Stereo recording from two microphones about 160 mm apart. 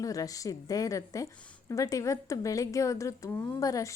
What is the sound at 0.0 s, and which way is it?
A woman's voice, 20° left (ahead or behind).